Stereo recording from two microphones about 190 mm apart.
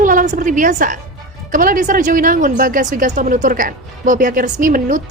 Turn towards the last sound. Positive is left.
turn(degrees=-45)  # may be behind; listen again after turning